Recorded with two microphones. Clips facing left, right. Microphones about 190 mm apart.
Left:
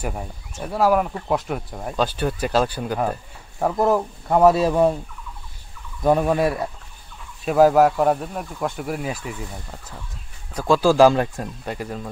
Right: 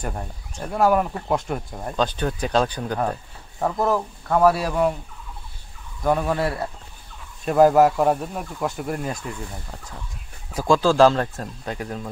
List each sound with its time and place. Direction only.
0.0 s speech: 5° left (ahead or behind)
3.7 s speech: 20° left (ahead or behind)
6.0 s speech: 15° left (ahead or behind)
7.4 s speech: centre (ahead or behind)